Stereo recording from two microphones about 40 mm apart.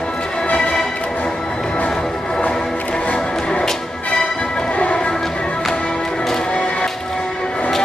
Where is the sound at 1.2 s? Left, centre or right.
Centre.